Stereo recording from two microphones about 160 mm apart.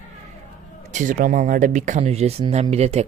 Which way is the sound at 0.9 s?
50° right (ahead or behind).